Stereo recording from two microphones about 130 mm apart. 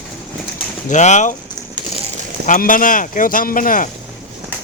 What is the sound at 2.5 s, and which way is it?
Speech, 90° left.